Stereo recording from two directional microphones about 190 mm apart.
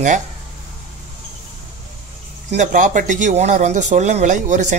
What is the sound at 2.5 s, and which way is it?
Speech, 40° right (ahead or behind).